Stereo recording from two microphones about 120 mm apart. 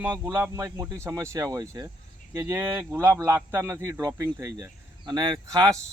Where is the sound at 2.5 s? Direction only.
15° right (ahead or behind).